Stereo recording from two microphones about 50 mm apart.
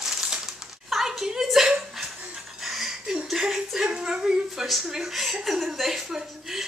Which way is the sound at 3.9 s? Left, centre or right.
Centre.